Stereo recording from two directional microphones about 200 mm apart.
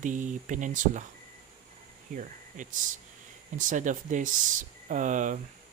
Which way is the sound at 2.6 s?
40° right (ahead or behind).